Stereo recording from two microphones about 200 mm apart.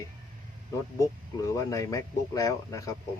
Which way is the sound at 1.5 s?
15° left (ahead or behind).